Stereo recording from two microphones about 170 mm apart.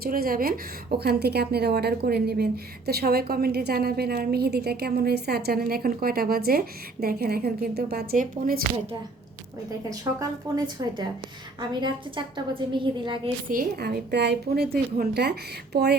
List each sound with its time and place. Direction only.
0.0 s a woman's voice: 60° right (ahead or behind)
9.9 s a woman's voice: 20° right (ahead or behind)
13.5 s a woman's voice: 60° right (ahead or behind)